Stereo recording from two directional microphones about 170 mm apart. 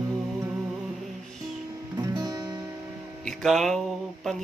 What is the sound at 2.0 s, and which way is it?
Music, 20° right (ahead or behind).